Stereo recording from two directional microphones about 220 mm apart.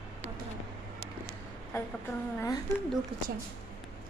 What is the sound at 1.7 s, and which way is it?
Speech, 10° left (ahead or behind).